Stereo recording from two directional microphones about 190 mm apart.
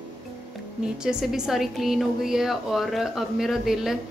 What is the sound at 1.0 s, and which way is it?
A woman's voice, centre (ahead or behind).